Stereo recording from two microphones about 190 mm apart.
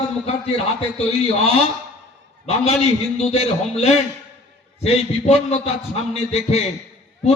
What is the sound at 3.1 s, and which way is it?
A man's voice, 35° left (ahead or behind).